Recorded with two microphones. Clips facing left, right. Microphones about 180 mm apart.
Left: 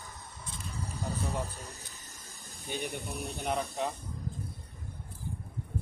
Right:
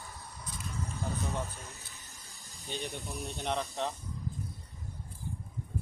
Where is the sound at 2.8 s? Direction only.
60° left (ahead or behind).